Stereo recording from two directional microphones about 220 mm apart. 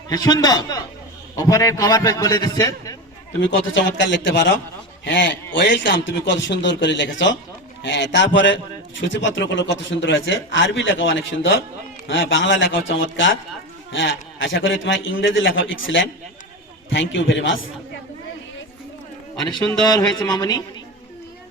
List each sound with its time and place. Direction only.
0.1 s a man's voice: 15° left (ahead or behind)
3.9 s a man's voice: 55° left (ahead or behind)
19.4 s speech: 20° left (ahead or behind)